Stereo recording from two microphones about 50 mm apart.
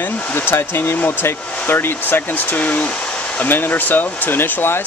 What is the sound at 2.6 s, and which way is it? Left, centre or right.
Speech, left.